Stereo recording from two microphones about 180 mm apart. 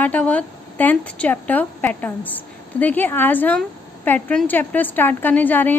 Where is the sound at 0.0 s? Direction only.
10° left (ahead or behind).